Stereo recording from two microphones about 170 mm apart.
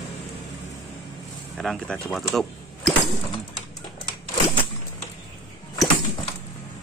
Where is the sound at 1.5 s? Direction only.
5° left (ahead or behind).